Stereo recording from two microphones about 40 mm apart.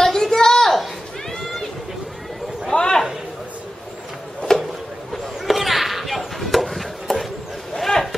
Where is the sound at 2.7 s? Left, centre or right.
Left.